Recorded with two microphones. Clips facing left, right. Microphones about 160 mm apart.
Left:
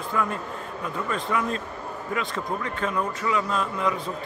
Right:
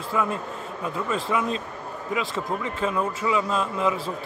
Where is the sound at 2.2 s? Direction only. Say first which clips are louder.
Right 1 dB; centre (ahead or behind).